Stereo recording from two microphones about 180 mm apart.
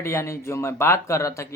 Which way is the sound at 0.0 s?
15° left (ahead or behind).